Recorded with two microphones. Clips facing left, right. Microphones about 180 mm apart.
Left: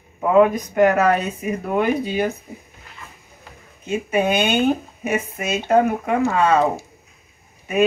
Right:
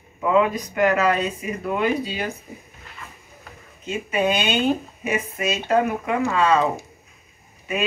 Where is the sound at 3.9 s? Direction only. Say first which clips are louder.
Left 3 dB; 50° left (ahead or behind).